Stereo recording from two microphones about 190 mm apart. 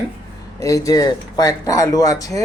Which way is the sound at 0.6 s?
15° left (ahead or behind).